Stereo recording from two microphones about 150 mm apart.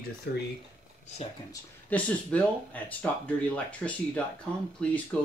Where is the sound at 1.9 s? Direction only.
10° left (ahead or behind).